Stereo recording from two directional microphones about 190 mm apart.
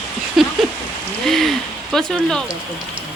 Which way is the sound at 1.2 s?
Centre (ahead or behind).